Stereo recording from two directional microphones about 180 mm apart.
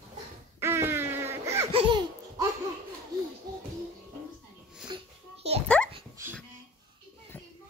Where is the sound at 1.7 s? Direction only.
25° right (ahead or behind).